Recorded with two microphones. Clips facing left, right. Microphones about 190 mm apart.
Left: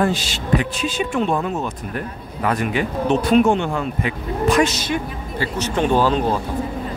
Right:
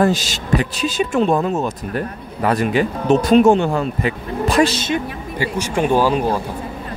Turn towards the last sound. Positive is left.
turn(degrees=-10)  # may be behind; listen again after turning